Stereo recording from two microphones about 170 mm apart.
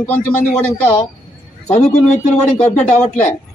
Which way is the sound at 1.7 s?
40° left (ahead or behind).